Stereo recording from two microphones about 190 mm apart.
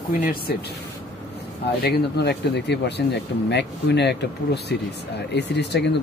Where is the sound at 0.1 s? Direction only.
50° left (ahead or behind).